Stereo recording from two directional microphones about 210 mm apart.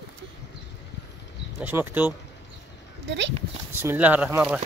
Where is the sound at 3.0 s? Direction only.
60° right (ahead or behind).